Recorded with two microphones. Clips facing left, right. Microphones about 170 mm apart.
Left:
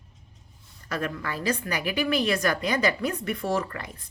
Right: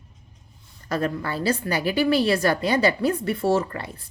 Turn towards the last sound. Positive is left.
turn(degrees=-30)  # may be behind; listen again after turning